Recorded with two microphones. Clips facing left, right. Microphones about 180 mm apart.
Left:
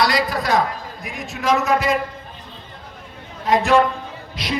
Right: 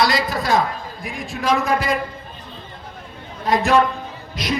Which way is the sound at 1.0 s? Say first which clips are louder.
Even; 30° right (ahead or behind).